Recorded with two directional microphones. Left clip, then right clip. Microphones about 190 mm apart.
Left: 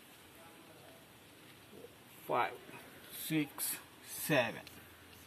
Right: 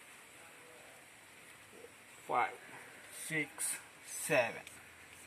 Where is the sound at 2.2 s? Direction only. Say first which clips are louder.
Even; 25° right (ahead or behind).